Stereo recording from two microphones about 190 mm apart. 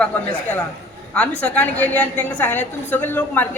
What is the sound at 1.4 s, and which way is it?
A woman's voice, 5° left (ahead or behind).